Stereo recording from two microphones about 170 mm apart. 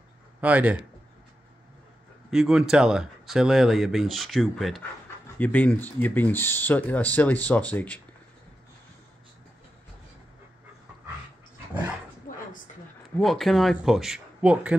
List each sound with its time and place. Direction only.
0.4 s speech: 10° right (ahead or behind)
2.3 s speech: centre (ahead or behind)
12.3 s a sound: 55° left (ahead or behind)
13.2 s speech: centre (ahead or behind)